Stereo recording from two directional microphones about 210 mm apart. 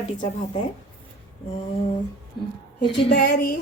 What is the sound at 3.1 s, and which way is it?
Speech, 50° left (ahead or behind).